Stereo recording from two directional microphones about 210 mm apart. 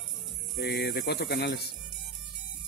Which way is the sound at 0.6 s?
50° left (ahead or behind).